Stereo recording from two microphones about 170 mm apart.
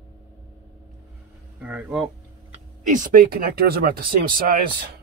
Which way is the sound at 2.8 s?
50° right (ahead or behind).